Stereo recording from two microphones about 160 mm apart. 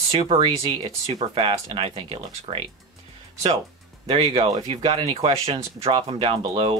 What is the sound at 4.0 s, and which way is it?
Speech, 35° right (ahead or behind).